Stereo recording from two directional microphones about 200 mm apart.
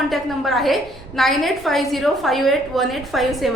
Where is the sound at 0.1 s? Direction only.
Centre (ahead or behind).